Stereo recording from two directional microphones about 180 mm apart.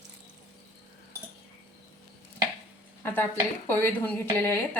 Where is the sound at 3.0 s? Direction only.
10° left (ahead or behind).